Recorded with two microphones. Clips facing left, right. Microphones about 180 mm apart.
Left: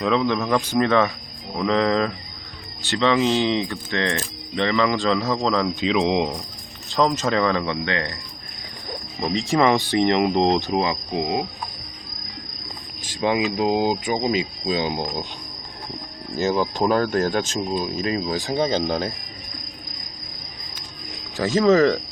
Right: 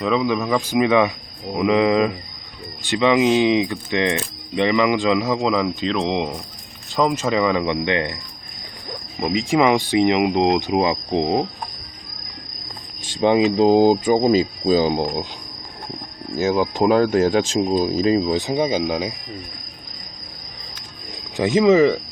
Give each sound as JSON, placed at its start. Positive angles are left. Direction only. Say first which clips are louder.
{"t": 0.0, "sound": "speech", "louder": "right 1 dB", "side_deg": -5}
{"t": 9.2, "sound": "speech", "louder": "right 2 dB", "side_deg": -10}
{"t": 13.0, "sound": "speech", "louder": "right 5 dB", "side_deg": -25}
{"t": 16.4, "sound": "speech", "louder": "right 3 dB", "side_deg": -5}
{"t": 17.7, "sound": "speech", "louder": "right 7 dB", "side_deg": -35}
{"t": 21.3, "sound": "speech", "louder": "right 2 dB", "side_deg": -20}